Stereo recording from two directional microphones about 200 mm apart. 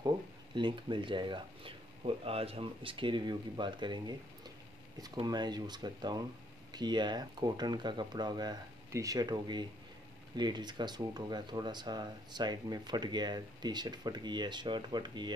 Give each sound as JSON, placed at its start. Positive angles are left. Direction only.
{"t": 0.6, "sound": "speech", "side_deg": -25}